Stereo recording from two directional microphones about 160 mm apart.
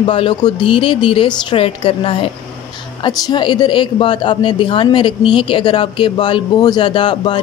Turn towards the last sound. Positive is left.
turn(degrees=30)  # may be behind; listen again after turning